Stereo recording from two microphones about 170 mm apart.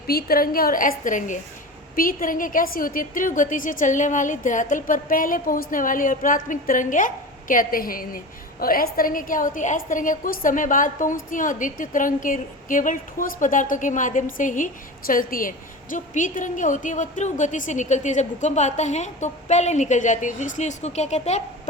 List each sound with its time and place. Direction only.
0.1 s a woman's voice: 65° left (ahead or behind); by 21.4 s 45° left (ahead or behind)